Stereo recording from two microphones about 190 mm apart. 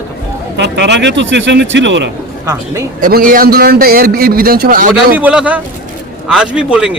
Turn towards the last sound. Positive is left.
turn(degrees=-5)  # may be behind; listen again after turning